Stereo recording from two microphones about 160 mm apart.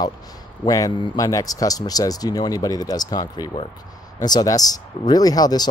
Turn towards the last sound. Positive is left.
turn(degrees=25)  # may be behind; listen again after turning